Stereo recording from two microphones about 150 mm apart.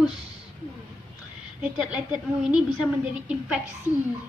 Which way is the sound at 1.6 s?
10° right (ahead or behind).